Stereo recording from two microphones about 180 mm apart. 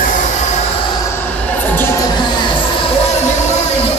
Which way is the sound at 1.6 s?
10° left (ahead or behind).